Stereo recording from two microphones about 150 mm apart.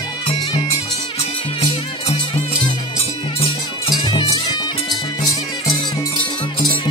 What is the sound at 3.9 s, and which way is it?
Music, 30° left (ahead or behind).